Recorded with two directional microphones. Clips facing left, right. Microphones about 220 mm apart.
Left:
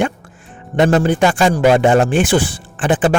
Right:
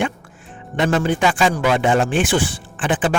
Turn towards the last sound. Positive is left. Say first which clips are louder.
# left 5 dB
turn(degrees=40)  # may be behind; listen again after turning